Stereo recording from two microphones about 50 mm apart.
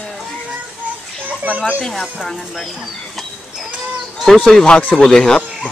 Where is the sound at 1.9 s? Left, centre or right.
Centre.